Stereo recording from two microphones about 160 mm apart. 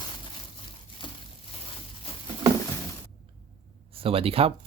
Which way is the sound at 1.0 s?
30° left (ahead or behind).